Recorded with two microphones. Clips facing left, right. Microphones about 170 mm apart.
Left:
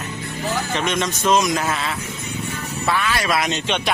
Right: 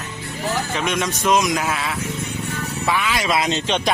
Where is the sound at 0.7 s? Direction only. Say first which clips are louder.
Even; 10° right (ahead or behind).